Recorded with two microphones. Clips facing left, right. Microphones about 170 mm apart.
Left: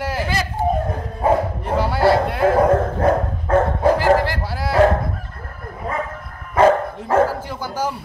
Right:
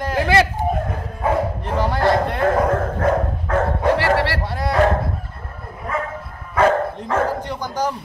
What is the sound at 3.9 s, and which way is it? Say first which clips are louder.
Speech: left 2 dB; 80° right.